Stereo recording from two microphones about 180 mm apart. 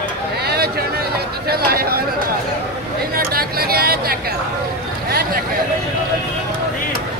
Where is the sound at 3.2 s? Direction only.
60° right (ahead or behind).